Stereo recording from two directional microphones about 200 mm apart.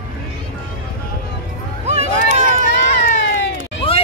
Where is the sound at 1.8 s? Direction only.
35° right (ahead or behind).